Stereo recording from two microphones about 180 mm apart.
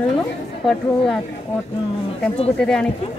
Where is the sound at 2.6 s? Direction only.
5° left (ahead or behind).